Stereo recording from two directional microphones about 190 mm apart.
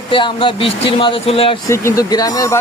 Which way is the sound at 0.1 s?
25° left (ahead or behind).